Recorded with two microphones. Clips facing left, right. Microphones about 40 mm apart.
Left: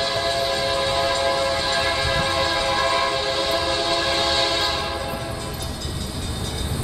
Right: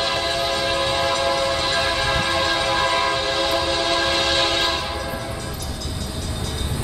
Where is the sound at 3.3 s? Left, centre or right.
Right.